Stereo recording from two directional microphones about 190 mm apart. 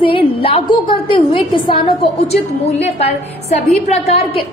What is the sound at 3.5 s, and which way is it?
Speech, 35° left (ahead or behind).